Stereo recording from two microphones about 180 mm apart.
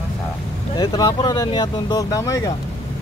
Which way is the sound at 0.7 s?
20° left (ahead or behind).